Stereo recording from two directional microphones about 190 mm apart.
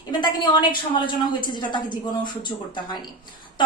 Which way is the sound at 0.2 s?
20° left (ahead or behind).